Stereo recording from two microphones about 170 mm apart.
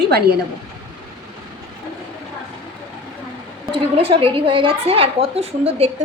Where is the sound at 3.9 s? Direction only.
35° right (ahead or behind).